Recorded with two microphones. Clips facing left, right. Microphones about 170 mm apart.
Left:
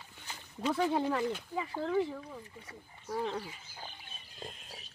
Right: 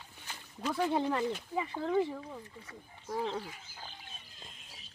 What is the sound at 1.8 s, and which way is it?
Speech, 20° right (ahead or behind).